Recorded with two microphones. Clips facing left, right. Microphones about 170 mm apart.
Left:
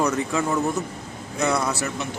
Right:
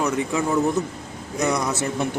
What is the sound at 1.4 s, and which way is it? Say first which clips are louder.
Speech: even; 15° right (ahead or behind).